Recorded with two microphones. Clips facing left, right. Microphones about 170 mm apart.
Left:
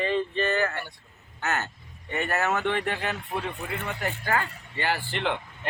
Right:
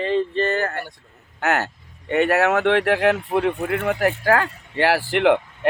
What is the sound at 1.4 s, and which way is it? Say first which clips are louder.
Speech: right 8 dB; 65° right (ahead or behind).